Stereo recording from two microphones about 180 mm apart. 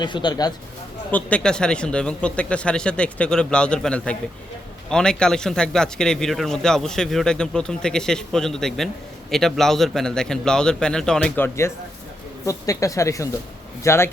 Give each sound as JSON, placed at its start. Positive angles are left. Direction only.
{"t": 0.0, "sound": "speech", "side_deg": 25}
{"t": 1.1, "sound": "speech", "side_deg": 5}